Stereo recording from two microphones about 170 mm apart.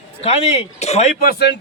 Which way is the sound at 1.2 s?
70° left (ahead or behind).